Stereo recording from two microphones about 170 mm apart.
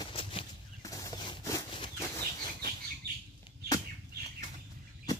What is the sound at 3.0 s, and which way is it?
Bird flight, 70° right (ahead or behind).